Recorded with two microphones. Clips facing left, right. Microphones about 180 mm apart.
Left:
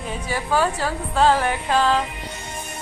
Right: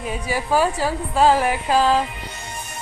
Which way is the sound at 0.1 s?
10° right (ahead or behind).